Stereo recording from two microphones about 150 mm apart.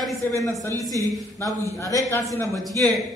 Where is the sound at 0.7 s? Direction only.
25° right (ahead or behind).